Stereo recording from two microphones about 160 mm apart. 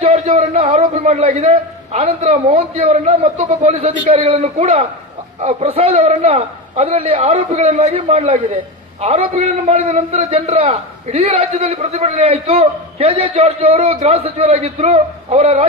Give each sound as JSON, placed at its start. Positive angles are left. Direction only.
{"t": 0.0, "sound": "a man's voice", "side_deg": -40}